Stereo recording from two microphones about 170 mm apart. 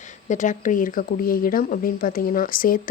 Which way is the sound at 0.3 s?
50° left (ahead or behind).